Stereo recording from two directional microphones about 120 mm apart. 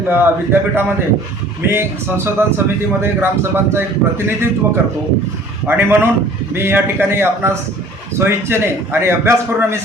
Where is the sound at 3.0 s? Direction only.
20° right (ahead or behind).